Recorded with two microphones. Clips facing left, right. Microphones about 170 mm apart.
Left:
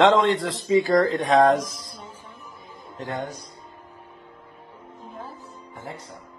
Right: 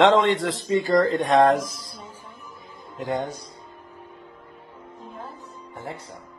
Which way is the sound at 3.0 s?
15° right (ahead or behind).